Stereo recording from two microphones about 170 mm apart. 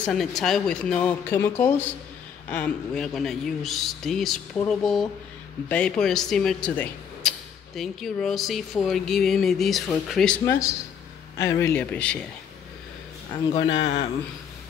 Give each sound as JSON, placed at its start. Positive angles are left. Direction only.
{"t": 0.0, "sound": "speech", "side_deg": 0}
{"t": 11.3, "sound": "a man's voice", "side_deg": 15}
{"t": 13.3, "sound": "a man's voice", "side_deg": 30}